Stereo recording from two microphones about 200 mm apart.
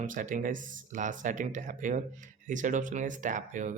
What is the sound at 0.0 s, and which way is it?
Speech, 40° right (ahead or behind).